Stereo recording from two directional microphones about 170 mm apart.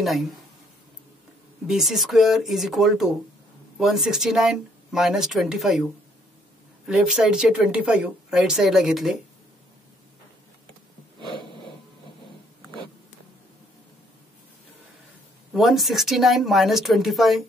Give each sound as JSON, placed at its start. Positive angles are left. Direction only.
{"t": 0.0, "sound": "a woman's voice", "side_deg": 0}
{"t": 1.7, "sound": "a woman's voice", "side_deg": 0}
{"t": 6.9, "sound": "a woman's voice", "side_deg": -5}
{"t": 11.1, "sound": "snort", "side_deg": -30}
{"t": 11.4, "sound": "a sound", "side_deg": 30}
{"t": 15.5, "sound": "a woman's voice", "side_deg": 0}